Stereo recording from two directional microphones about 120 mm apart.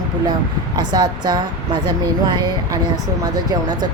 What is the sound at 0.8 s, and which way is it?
Speech, 35° right (ahead or behind).